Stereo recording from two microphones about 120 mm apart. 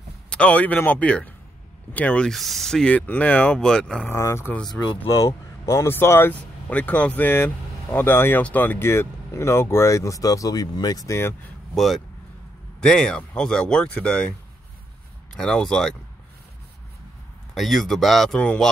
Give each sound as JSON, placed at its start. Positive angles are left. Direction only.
{"t": 0.3, "sound": "speech", "side_deg": 10}
{"t": 4.1, "sound": "speech", "side_deg": 20}
{"t": 11.7, "sound": "speech", "side_deg": 0}
{"t": 15.3, "sound": "speech", "side_deg": 5}
{"t": 17.6, "sound": "speech", "side_deg": 0}